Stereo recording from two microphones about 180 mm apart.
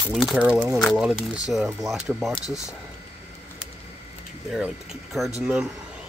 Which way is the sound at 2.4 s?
20° left (ahead or behind).